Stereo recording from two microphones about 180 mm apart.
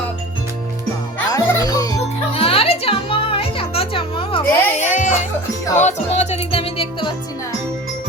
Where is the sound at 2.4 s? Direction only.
30° left (ahead or behind).